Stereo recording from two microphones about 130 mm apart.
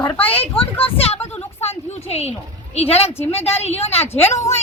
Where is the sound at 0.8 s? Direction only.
50° left (ahead or behind).